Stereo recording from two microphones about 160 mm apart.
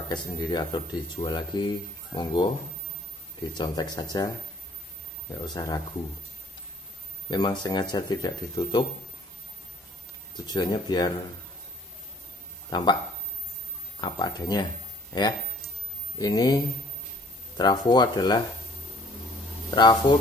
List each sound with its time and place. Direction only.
0.1 s speech: 25° left (ahead or behind)
3.5 s speech: 30° left (ahead or behind)
5.3 s speech: 25° left (ahead or behind)
7.2 s speech: 25° left (ahead or behind)
10.3 s speech: 25° left (ahead or behind)
12.6 s speech: 25° left (ahead or behind)
14.0 s speech: 25° left (ahead or behind)
16.2 s speech: 25° left (ahead or behind)
19.7 s speech: 25° left (ahead or behind)